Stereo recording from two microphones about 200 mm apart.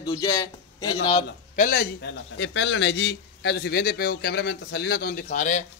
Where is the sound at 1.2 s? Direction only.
45° left (ahead or behind).